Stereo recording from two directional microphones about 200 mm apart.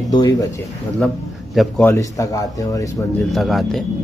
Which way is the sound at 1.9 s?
15° left (ahead or behind).